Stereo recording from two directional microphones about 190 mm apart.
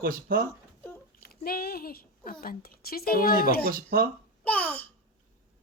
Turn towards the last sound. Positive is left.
turn(degrees=10)  # may be behind; listen again after turning